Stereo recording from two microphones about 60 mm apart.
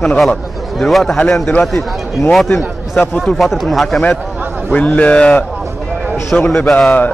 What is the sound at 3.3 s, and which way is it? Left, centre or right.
Speech, centre.